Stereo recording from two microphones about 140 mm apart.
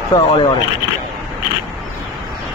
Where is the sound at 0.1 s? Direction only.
35° left (ahead or behind).